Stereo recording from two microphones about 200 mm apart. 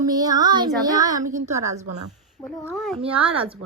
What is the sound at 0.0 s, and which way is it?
Child singing, 20° right (ahead or behind).